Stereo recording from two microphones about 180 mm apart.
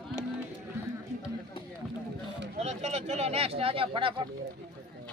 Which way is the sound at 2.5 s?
35° right (ahead or behind).